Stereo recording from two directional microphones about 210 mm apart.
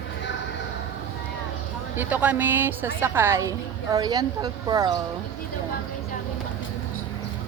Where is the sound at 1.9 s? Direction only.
5° right (ahead or behind).